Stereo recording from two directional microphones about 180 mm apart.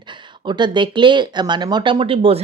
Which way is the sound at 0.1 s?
25° right (ahead or behind).